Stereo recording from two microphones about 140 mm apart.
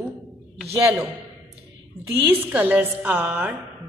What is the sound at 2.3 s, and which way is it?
A woman's voice, 15° right (ahead or behind).